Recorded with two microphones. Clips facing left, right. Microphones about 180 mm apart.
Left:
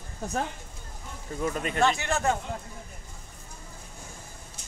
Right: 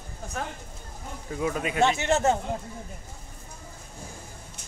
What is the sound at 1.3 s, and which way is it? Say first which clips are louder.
Speech: right 2 dB; 5° right (ahead or behind).